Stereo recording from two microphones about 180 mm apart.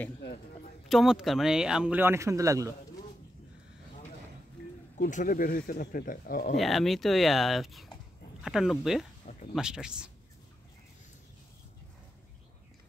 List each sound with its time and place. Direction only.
0.8 s speech: centre (ahead or behind); by 2.7 s 15° right (ahead or behind)
4.9 s speech: 50° left (ahead or behind)
6.5 s speech: centre (ahead or behind)